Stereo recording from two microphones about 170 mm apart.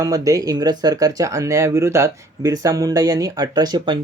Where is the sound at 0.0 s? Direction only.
20° right (ahead or behind).